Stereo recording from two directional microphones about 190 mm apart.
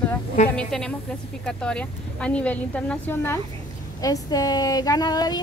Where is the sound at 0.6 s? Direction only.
5° left (ahead or behind).